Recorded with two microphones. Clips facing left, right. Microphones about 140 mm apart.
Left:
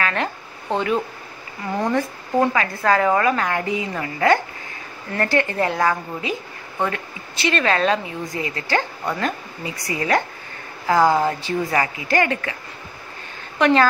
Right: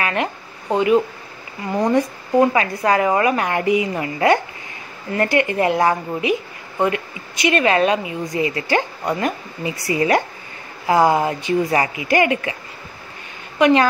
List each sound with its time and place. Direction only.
0.0 s a woman's voice: 10° right (ahead or behind)
7.4 s a woman's voice: 15° right (ahead or behind)
13.6 s speech: 10° right (ahead or behind)